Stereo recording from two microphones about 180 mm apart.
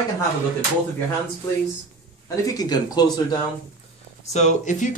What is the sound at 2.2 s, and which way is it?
Speech, 20° left (ahead or behind).